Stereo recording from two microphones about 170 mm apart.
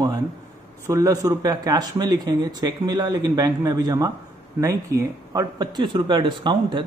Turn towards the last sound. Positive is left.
turn(degrees=-30)  # may be behind; listen again after turning